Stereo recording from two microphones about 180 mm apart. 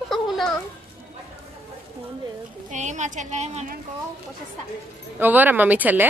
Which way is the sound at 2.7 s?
40° right (ahead or behind).